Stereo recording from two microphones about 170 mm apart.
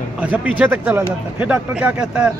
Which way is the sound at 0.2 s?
10° right (ahead or behind).